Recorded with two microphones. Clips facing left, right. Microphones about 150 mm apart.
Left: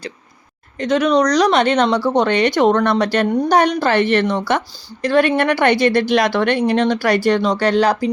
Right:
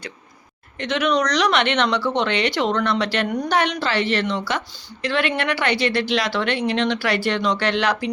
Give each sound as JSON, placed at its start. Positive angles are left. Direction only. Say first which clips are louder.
{"t": 0.8, "sound": "speech", "louder": "left 6 dB", "side_deg": 40}
{"t": 3.2, "sound": "a woman's voice", "louder": "left 7 dB", "side_deg": 30}
{"t": 3.5, "sound": "speech", "louder": "left 7 dB", "side_deg": 45}